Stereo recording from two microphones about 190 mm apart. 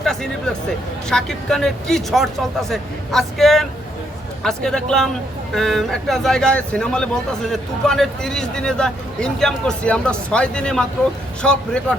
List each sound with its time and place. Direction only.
0.0 s a man's voice: centre (ahead or behind)